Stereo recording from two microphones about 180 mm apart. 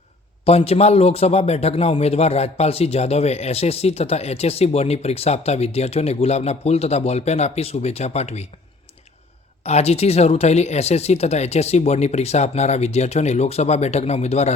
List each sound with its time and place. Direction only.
0.4 s a man's voice: 35° left (ahead or behind)
9.6 s a man's voice: 35° left (ahead or behind)